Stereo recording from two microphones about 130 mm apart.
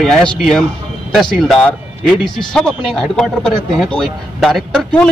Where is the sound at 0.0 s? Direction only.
5° left (ahead or behind).